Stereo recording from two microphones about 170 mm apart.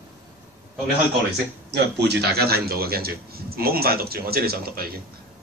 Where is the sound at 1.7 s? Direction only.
75° right (ahead or behind).